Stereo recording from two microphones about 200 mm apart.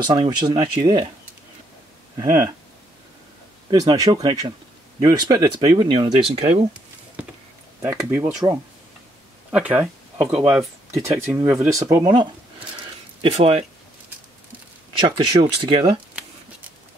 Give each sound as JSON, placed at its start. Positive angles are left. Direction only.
{"t": 0.0, "sound": "speech", "side_deg": -20}
{"t": 2.1, "sound": "speech", "side_deg": -15}
{"t": 3.8, "sound": "speech", "side_deg": -20}
{"t": 7.8, "sound": "speech", "side_deg": -15}
{"t": 10.9, "sound": "speech", "side_deg": -15}
{"t": 15.0, "sound": "speech", "side_deg": -25}